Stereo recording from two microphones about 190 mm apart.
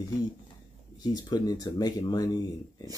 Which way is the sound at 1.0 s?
20° left (ahead or behind).